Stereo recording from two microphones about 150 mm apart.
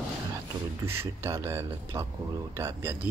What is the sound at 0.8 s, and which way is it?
Speech, 15° right (ahead or behind).